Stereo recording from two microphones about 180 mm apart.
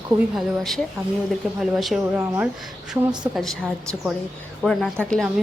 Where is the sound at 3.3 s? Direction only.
Centre (ahead or behind).